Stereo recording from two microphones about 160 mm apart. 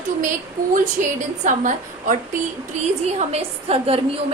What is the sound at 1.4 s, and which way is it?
Speech, 50° right (ahead or behind).